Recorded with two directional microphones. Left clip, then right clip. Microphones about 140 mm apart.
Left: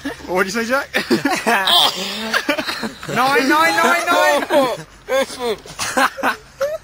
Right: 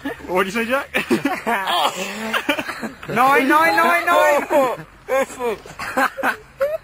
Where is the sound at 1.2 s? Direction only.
50° left (ahead or behind).